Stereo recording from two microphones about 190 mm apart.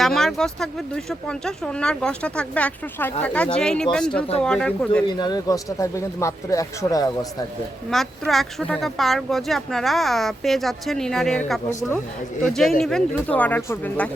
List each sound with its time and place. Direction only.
0.0 s speech: centre (ahead or behind)
5.0 s speech: 25° left (ahead or behind)
7.9 s speech: centre (ahead or behind)